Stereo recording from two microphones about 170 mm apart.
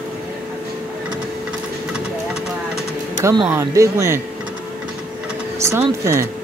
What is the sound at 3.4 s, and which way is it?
Speech, 15° right (ahead or behind).